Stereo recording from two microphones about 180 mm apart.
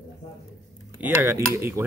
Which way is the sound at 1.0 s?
10° right (ahead or behind).